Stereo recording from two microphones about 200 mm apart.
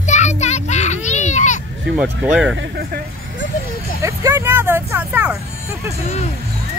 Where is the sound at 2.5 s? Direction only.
50° right (ahead or behind).